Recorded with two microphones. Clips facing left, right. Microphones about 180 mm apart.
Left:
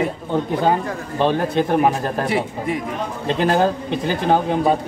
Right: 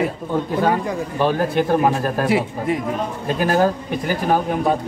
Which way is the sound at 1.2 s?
20° left (ahead or behind).